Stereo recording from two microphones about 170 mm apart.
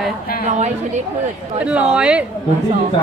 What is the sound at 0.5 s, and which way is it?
Speech, 40° right (ahead or behind).